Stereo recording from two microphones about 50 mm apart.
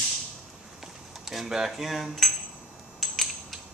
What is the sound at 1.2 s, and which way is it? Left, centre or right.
Speech, centre.